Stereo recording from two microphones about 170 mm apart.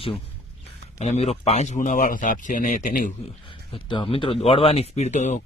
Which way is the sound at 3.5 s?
30° left (ahead or behind).